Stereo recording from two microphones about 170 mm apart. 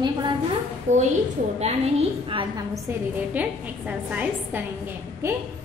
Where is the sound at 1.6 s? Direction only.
35° right (ahead or behind).